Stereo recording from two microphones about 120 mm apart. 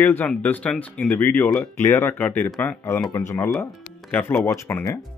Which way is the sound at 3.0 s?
25° left (ahead or behind).